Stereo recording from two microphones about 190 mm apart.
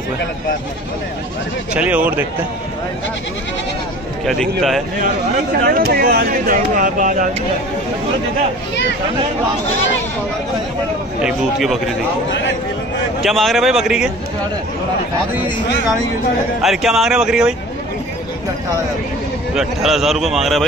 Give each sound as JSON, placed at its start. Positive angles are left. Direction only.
{"t": 1.7, "sound": "speech", "side_deg": -5}
{"t": 4.3, "sound": "speech", "side_deg": 0}
{"t": 5.7, "sound": "speech", "side_deg": -50}
{"t": 11.2, "sound": "speech", "side_deg": 0}
{"t": 13.2, "sound": "speech", "side_deg": 0}
{"t": 16.6, "sound": "speech", "side_deg": 0}
{"t": 19.5, "sound": "speech", "side_deg": 0}